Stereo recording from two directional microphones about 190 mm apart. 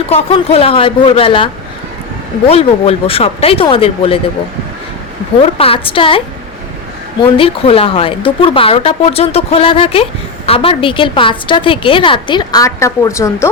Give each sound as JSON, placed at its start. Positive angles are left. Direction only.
{"t": 0.1, "sound": "a woman's voice", "side_deg": 30}
{"t": 2.5, "sound": "a woman's voice", "side_deg": 30}
{"t": 5.5, "sound": "a woman's voice", "side_deg": 30}